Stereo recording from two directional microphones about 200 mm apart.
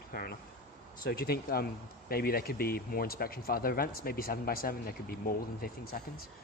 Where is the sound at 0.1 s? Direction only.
50° left (ahead or behind).